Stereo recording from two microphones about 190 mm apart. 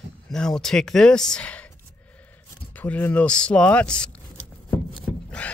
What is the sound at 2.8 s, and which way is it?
Speech, 10° left (ahead or behind).